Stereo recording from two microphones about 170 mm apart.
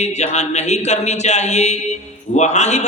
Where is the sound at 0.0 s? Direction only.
40° left (ahead or behind).